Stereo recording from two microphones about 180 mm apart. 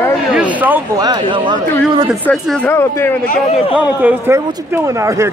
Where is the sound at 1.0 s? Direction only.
25° right (ahead or behind).